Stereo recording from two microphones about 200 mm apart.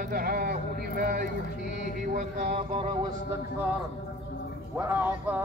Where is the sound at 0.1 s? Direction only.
45° right (ahead or behind).